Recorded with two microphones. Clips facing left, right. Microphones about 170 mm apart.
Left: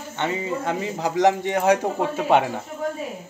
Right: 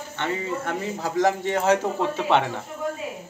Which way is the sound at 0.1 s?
15° left (ahead or behind).